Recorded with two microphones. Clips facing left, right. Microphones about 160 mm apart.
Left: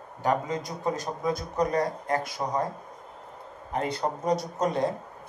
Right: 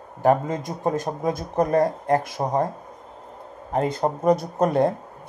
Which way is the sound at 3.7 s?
45° right (ahead or behind).